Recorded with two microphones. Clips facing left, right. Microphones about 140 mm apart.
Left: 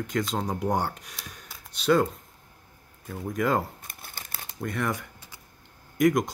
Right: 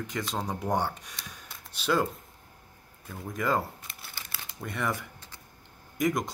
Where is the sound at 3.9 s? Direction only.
50° left (ahead or behind).